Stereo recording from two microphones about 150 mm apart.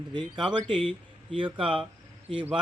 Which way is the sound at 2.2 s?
40° right (ahead or behind).